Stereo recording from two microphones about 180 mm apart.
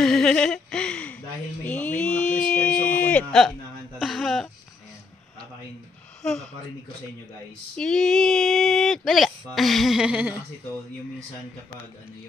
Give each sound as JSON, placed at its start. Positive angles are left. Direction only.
{"t": 0.0, "sound": "a sound", "side_deg": 5}
{"t": 6.2, "sound": "speech", "side_deg": 0}
{"t": 7.7, "sound": "speech", "side_deg": 5}